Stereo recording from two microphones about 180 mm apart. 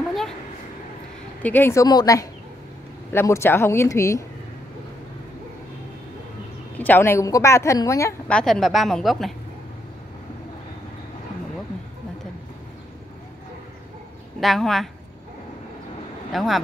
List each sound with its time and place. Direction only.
1.4 s a woman's voice: 10° left (ahead or behind)
6.8 s a woman's voice: 10° left (ahead or behind)
8.3 s a woman's voice: 5° left (ahead or behind)
14.4 s a woman's voice: centre (ahead or behind)
16.3 s speech: centre (ahead or behind)